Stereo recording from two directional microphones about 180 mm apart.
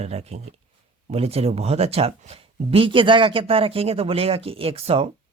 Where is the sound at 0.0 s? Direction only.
35° right (ahead or behind).